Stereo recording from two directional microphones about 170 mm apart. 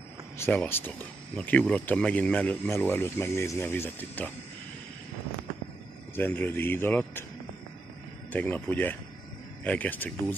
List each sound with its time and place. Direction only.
0.4 s speech: 10° left (ahead or behind)
6.1 s speech: 10° left (ahead or behind)
8.3 s speech: 10° left (ahead or behind)